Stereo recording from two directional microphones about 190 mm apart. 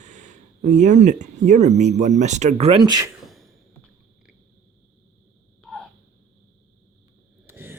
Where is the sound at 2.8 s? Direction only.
20° right (ahead or behind).